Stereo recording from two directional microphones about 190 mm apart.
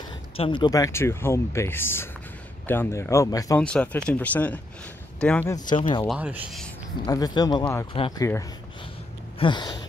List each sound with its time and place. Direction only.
0.4 s speech: 25° left (ahead or behind)
3.6 s speech: 5° left (ahead or behind)
5.5 s speech: 25° left (ahead or behind)
6.0 s speech: 5° right (ahead or behind)
7.1 s speech: 20° left (ahead or behind)
9.4 s a sound: 25° left (ahead or behind)